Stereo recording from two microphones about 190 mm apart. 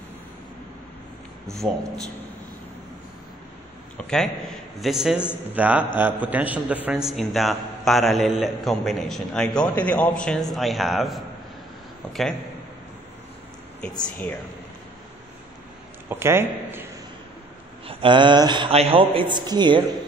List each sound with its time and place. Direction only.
4.7 s a man's voice: centre (ahead or behind)
14.0 s speech: 10° left (ahead or behind)
16.1 s a man's voice: 10° right (ahead or behind)
17.8 s speech: 25° right (ahead or behind)